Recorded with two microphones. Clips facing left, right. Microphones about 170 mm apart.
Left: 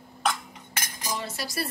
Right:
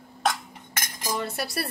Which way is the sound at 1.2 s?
60° right (ahead or behind).